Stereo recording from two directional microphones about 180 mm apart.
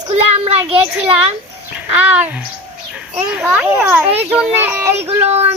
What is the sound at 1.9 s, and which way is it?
A child's voice, 10° right (ahead or behind).